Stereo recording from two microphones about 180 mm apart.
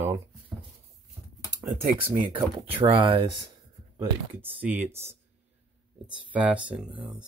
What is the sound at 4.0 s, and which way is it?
Speech, 10° right (ahead or behind).